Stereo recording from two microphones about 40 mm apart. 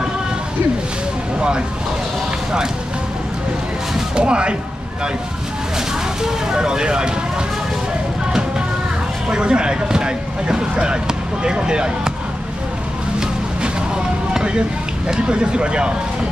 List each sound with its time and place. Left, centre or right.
4.1 s speech: right
6.2 s speech: centre
9.3 s speech: right
14.3 s a sound: right
15.0 s speech: right